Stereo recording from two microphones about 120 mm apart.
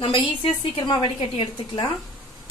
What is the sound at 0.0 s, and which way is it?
A woman's voice, 45° left (ahead or behind).